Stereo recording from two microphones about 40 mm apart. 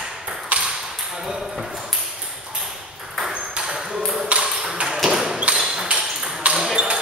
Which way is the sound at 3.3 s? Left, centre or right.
Right.